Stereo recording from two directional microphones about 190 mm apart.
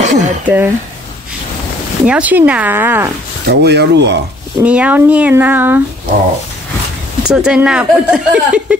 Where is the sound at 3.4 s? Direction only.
60° right (ahead or behind).